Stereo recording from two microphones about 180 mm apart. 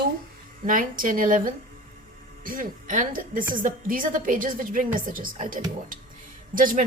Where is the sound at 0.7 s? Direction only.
50° right (ahead or behind).